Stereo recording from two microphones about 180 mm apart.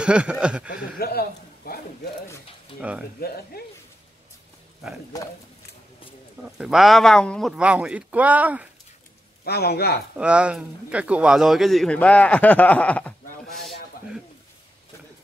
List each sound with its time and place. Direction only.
0.0 s speech: 5° right (ahead or behind)
0.9 s a man's voice: 60° left (ahead or behind)
1.6 s a sound: 55° left (ahead or behind)
2.7 s speech: 30° left (ahead or behind)
3.2 s a man's voice: 60° left (ahead or behind)
6.6 s speech: centre (ahead or behind)
9.4 s a man's voice: 60° left (ahead or behind)
10.1 s speech: 5° right (ahead or behind)